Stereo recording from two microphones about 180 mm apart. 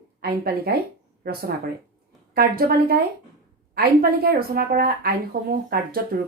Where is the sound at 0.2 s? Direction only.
60° right (ahead or behind).